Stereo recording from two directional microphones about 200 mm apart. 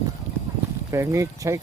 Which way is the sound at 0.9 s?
15° right (ahead or behind).